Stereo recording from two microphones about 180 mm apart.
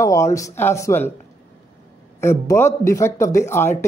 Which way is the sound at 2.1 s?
15° left (ahead or behind).